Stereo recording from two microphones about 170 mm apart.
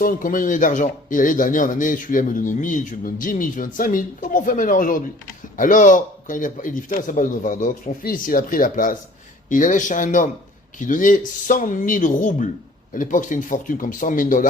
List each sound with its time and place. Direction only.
0.0 s speech: 55° left (ahead or behind)